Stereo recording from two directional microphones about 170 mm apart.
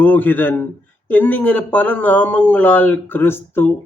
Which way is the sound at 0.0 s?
10° left (ahead or behind).